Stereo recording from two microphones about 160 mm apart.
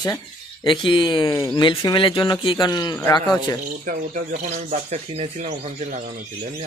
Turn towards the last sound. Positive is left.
turn(degrees=-45)  # may be behind; listen again after turning